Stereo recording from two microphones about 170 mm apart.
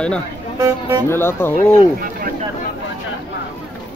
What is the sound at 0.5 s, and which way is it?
Speech, 20° right (ahead or behind).